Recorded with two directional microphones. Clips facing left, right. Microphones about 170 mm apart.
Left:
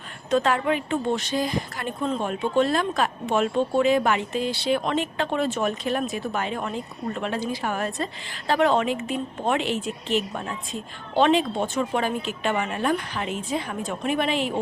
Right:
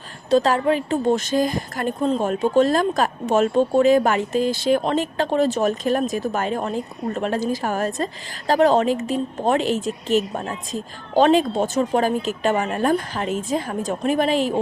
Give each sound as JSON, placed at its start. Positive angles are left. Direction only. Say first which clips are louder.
{"t": 0.3, "sound": "speech", "louder": "right 4 dB", "side_deg": -35}